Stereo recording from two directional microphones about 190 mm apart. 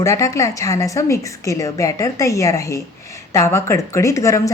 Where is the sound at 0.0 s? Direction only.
15° left (ahead or behind).